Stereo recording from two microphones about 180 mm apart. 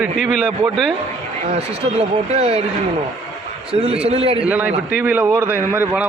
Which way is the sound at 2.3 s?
35° right (ahead or behind).